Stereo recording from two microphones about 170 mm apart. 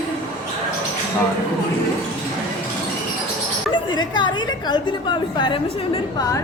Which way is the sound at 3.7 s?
25° left (ahead or behind).